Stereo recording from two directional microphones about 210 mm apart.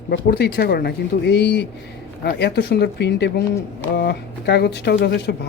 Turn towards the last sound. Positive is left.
turn(degrees=55)  # may be behind; listen again after turning